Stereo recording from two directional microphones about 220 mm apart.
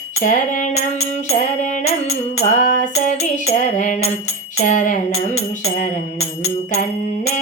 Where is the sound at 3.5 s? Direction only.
35° left (ahead or behind).